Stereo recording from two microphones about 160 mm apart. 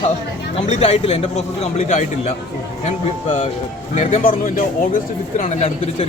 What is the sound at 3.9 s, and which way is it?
Speech, 50° left (ahead or behind).